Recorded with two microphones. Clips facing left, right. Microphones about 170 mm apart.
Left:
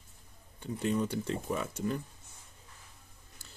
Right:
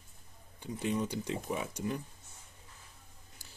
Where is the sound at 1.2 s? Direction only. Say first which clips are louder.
Left 2 dB; 10° right (ahead or behind).